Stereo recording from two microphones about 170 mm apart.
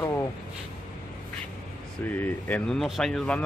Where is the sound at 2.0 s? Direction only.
10° left (ahead or behind).